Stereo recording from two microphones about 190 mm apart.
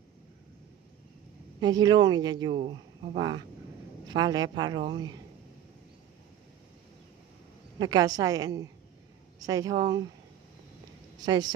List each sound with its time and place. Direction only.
1.6 s speech: 20° right (ahead or behind)
7.8 s speech: 20° right (ahead or behind)